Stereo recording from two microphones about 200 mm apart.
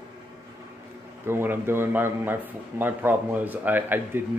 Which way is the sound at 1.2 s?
10° right (ahead or behind).